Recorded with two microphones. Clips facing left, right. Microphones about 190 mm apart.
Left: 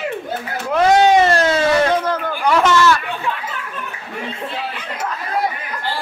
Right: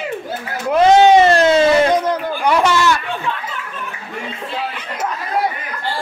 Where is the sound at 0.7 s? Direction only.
20° right (ahead or behind).